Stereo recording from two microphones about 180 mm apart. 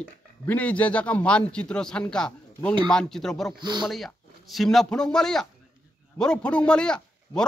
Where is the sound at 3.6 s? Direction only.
25° right (ahead or behind).